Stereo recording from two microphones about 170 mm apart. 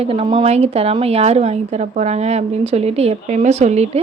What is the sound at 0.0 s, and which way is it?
A woman's voice, 35° right (ahead or behind).